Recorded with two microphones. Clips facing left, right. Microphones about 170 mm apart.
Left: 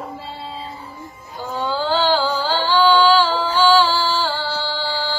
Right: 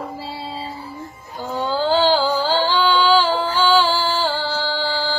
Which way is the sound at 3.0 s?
15° right (ahead or behind).